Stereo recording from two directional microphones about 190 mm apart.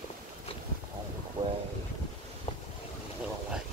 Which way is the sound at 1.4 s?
25° right (ahead or behind).